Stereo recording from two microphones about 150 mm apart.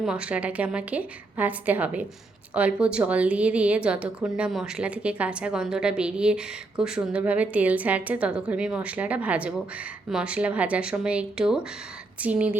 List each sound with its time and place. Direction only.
0.0 s a woman's voice: 5° right (ahead or behind)